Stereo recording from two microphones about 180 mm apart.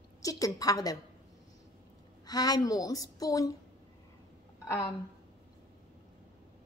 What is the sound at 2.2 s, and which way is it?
A woman's voice, 20° left (ahead or behind).